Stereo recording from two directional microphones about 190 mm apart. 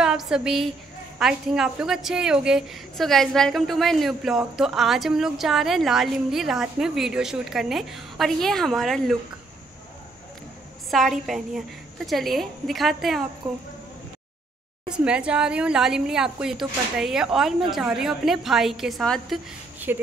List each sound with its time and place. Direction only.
0.0 s a woman's voice: 5° right (ahead or behind)
10.9 s a woman's voice: centre (ahead or behind)
13.4 s a woman's voice: 25° right (ahead or behind)
14.9 s a woman's voice: 5° right (ahead or behind)